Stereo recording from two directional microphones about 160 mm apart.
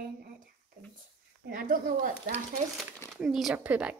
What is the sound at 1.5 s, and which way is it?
Speech, 60° right (ahead or behind).